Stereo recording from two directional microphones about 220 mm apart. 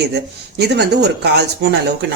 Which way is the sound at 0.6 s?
50° right (ahead or behind).